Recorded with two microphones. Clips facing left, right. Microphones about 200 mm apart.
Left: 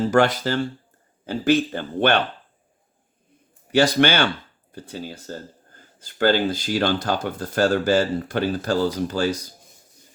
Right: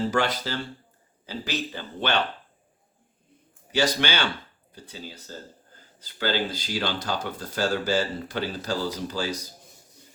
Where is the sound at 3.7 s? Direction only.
55° left (ahead or behind).